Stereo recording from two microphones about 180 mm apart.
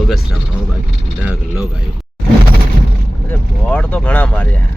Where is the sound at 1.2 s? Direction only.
5° right (ahead or behind).